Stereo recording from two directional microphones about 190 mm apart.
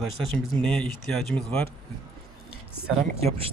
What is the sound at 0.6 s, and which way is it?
Speech, 5° left (ahead or behind).